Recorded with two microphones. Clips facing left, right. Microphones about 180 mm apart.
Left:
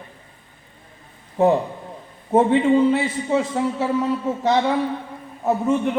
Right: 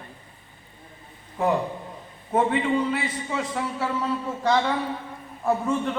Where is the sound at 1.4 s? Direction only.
25° left (ahead or behind).